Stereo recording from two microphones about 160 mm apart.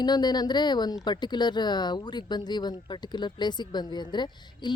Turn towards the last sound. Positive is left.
turn(degrees=30)  # may be behind; listen again after turning